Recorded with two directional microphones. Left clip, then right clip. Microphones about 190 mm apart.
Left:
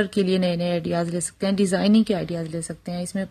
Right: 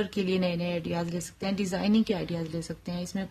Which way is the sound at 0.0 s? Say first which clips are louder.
Left 7 dB; 20° left (ahead or behind).